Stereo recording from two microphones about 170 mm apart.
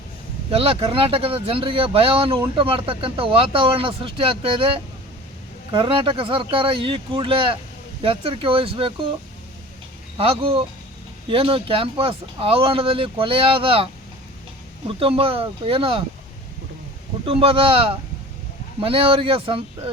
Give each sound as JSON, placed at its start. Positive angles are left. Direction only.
{"t": 0.5, "sound": "speech", "side_deg": -35}
{"t": 10.2, "sound": "speech", "side_deg": -35}
{"t": 17.2, "sound": "speech", "side_deg": -35}